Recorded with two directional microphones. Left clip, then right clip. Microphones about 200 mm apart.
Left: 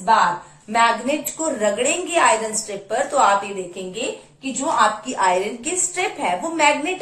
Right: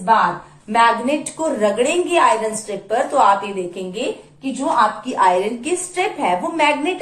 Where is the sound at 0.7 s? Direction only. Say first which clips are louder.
Right 3 dB; 15° right (ahead or behind).